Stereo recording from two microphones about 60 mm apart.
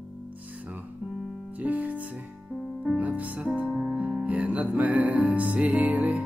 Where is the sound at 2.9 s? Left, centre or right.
Right.